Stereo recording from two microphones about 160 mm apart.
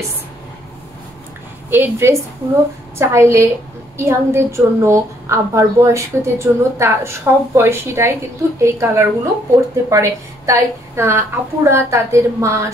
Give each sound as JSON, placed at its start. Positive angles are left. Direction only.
{"t": 1.7, "sound": "a woman's voice", "side_deg": -15}